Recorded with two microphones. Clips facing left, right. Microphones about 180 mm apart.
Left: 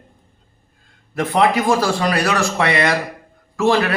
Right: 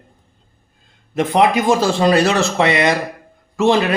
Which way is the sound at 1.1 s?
20° right (ahead or behind).